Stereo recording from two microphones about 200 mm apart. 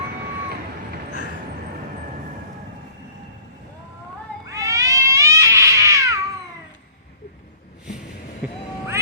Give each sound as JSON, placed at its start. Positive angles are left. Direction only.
{"t": 4.4, "sound": "cat", "side_deg": -15}
{"t": 8.4, "sound": "vehicle", "side_deg": -5}